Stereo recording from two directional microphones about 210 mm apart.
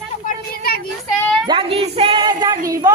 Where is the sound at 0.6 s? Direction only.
45° left (ahead or behind).